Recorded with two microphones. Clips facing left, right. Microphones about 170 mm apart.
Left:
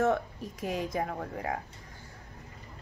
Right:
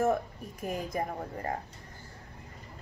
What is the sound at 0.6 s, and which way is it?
Speech, 90° left.